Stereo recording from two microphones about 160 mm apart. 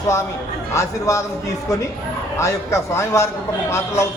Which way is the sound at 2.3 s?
20° left (ahead or behind).